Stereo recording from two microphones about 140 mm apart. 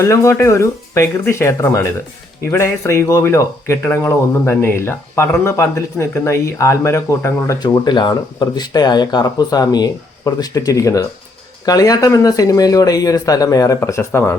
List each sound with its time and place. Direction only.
0.0 s speech: 20° left (ahead or behind)